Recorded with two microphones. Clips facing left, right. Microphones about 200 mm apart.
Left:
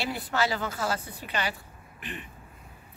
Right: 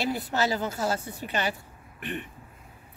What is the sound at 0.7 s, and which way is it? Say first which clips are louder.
Speech: right 2 dB; 25° right (ahead or behind).